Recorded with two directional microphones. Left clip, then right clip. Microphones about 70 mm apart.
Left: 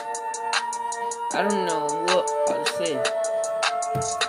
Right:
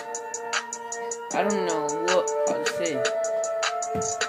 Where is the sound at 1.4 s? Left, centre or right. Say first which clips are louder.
Left 2 dB; left.